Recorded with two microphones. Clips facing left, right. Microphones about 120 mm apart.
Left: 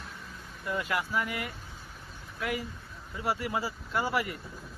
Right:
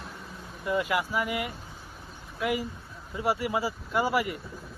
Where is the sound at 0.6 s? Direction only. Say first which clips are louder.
Right 4 dB; 10° right (ahead or behind).